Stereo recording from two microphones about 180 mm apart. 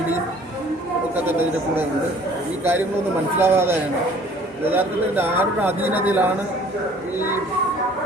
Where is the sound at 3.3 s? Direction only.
15° right (ahead or behind).